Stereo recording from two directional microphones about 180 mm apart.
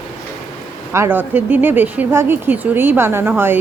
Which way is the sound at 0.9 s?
10° right (ahead or behind).